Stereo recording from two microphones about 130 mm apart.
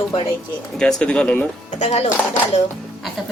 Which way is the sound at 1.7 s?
60° left (ahead or behind).